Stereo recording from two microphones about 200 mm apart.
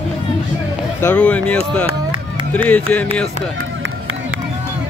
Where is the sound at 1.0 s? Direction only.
10° left (ahead or behind).